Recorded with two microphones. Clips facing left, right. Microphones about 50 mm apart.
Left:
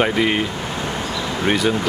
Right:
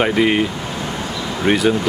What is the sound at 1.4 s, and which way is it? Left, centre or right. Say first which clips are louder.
Speech: right 3 dB; centre.